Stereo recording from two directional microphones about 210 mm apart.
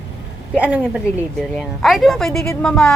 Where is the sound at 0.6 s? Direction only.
5° right (ahead or behind).